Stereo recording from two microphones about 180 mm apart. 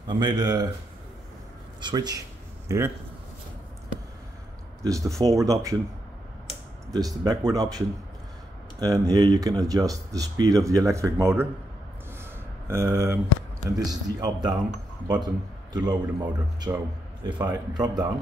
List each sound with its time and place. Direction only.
0.2 s a man's voice: 25° right (ahead or behind)
1.8 s a man's voice: 25° right (ahead or behind)
4.8 s speech: 20° right (ahead or behind)
6.9 s a man's voice: 20° right (ahead or behind)
12.6 s a man's voice: 15° right (ahead or behind)